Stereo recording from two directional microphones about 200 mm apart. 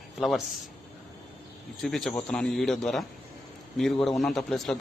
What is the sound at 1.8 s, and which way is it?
Speech, centre (ahead or behind).